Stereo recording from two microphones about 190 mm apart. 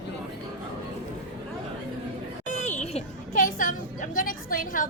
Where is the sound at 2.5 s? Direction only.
40° left (ahead or behind).